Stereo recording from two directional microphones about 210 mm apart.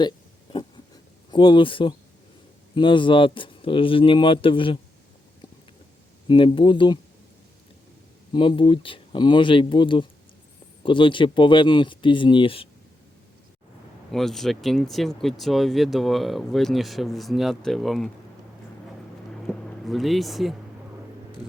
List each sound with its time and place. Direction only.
1.3 s speech: 25° left (ahead or behind)
6.2 s speech: 25° left (ahead or behind)
8.3 s speech: 25° left (ahead or behind)
14.1 s speech: centre (ahead or behind)
19.5 s speech: centre (ahead or behind)